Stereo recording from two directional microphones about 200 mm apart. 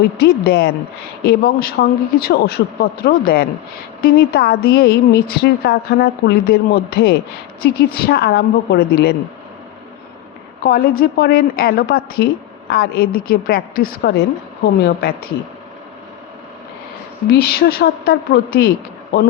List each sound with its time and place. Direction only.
0.2 s a woman's voice: 50° left (ahead or behind)
10.6 s a woman's voice: 45° left (ahead or behind)
17.2 s a woman's voice: 50° left (ahead or behind)